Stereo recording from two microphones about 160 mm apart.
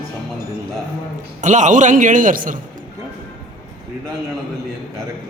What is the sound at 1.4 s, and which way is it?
A man's voice, 50° right (ahead or behind).